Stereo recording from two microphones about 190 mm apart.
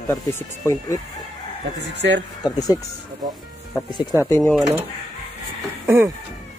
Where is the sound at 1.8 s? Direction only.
70° right (ahead or behind).